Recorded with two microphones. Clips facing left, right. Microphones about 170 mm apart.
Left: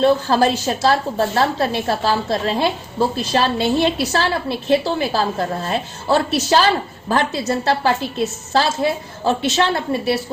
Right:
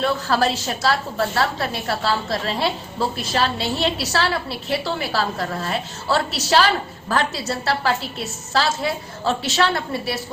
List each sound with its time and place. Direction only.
0.0 s a woman's voice: 20° left (ahead or behind)